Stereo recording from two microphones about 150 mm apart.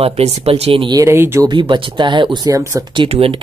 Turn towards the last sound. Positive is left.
turn(degrees=-40)  # may be behind; listen again after turning